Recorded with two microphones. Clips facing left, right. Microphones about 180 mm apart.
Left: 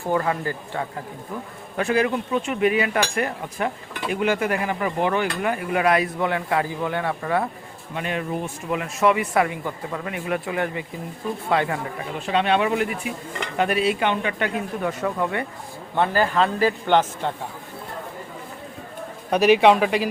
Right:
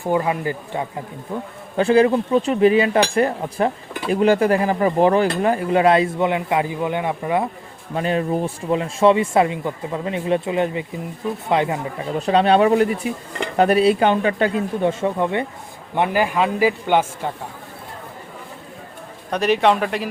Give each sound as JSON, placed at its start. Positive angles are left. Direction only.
{"t": 0.0, "sound": "a man's voice", "side_deg": -15}
{"t": 1.7, "sound": "speech", "side_deg": -30}
{"t": 7.9, "sound": "speech", "side_deg": -35}
{"t": 12.2, "sound": "a man's voice", "side_deg": -35}
{"t": 19.3, "sound": "speech", "side_deg": 5}